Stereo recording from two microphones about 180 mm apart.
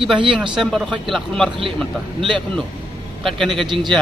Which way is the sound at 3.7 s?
25° right (ahead or behind).